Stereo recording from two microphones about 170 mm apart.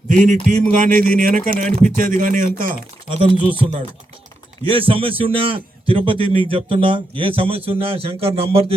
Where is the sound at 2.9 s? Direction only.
30° right (ahead or behind).